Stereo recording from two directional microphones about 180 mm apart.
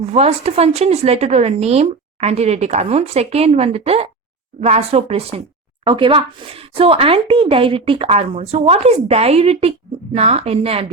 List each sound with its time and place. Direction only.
0.0 s speech: 35° right (ahead or behind)